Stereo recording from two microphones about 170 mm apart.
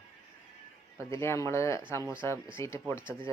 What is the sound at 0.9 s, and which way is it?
Speech, 15° left (ahead or behind).